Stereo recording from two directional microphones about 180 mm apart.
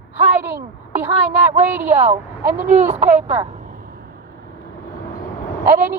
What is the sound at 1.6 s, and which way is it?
Speech, 10° right (ahead or behind).